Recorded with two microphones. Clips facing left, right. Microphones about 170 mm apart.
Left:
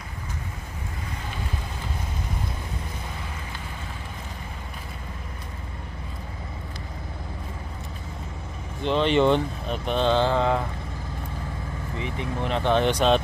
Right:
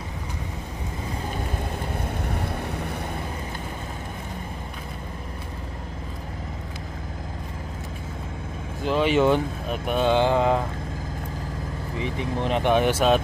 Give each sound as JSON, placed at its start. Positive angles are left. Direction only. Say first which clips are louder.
{"t": 2.0, "sound": "vehicle", "louder": "right 4 dB", "side_deg": -65}
{"t": 8.8, "sound": "speech", "louder": "even", "side_deg": -5}
{"t": 12.0, "sound": "speech", "louder": "right 3 dB", "side_deg": -15}